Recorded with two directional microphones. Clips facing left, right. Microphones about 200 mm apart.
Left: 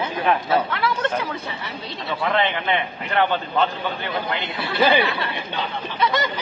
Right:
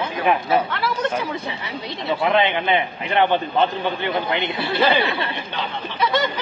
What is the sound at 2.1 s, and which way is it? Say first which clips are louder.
A man's voice: right 3 dB; 20° right (ahead or behind).